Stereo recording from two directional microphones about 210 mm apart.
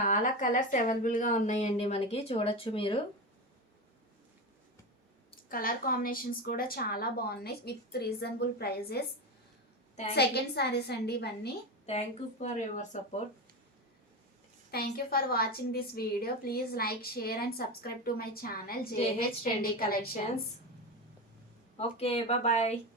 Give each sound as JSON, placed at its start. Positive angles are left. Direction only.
{"t": 0.0, "sound": "a woman's voice", "side_deg": 40}
{"t": 5.5, "sound": "a woman's voice", "side_deg": 45}
{"t": 10.2, "sound": "a woman's voice", "side_deg": 50}
{"t": 11.9, "sound": "speech", "side_deg": 30}
{"t": 14.7, "sound": "a woman's voice", "side_deg": 45}
{"t": 21.8, "sound": "a woman's voice", "side_deg": 30}